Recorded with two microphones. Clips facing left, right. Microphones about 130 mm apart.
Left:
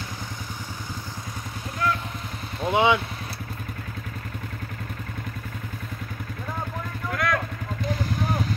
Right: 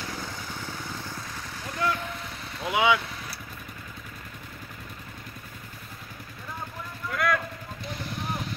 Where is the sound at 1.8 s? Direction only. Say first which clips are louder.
Left 2 dB; 25° right (ahead or behind).